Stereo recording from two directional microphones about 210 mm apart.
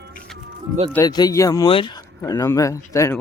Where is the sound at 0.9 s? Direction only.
20° left (ahead or behind).